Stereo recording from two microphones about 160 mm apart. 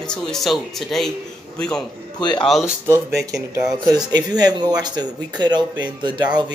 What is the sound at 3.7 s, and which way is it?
Speech, 25° right (ahead or behind).